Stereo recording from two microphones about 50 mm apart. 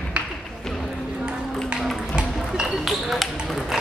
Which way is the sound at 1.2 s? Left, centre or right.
Centre.